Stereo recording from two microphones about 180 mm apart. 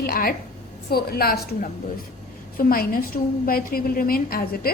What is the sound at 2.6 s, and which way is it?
A woman's voice, 55° left (ahead or behind).